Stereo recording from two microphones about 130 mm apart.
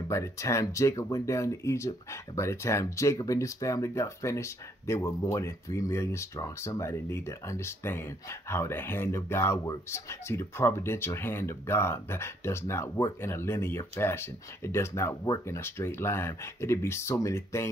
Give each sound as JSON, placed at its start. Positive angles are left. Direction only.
{"t": 0.1, "sound": "speech", "side_deg": 20}